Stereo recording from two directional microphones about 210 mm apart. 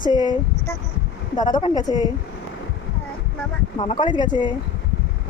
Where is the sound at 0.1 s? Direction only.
20° left (ahead or behind).